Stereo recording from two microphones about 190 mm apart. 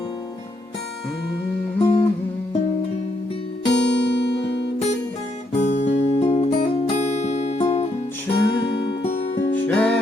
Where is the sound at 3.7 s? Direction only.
65° left (ahead or behind).